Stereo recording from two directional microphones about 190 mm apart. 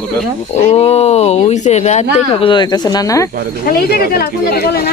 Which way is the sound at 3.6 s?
50° left (ahead or behind).